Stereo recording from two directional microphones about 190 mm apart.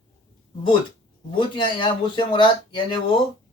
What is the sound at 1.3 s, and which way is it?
Speech, 25° left (ahead or behind).